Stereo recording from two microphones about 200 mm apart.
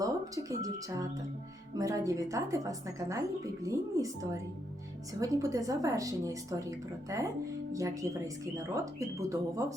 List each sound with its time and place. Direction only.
0.0 s a woman's voice: 15° right (ahead or behind)